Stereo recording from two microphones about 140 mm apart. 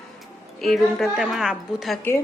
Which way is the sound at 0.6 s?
Centre (ahead or behind).